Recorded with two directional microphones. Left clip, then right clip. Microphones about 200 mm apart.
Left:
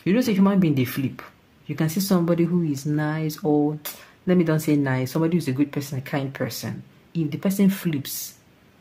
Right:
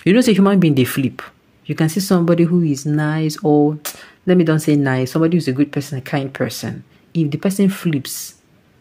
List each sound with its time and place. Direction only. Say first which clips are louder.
0.0 s speech: right 8 dB; 35° right (ahead or behind)